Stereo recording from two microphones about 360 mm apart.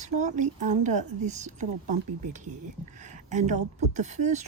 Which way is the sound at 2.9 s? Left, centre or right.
Centre.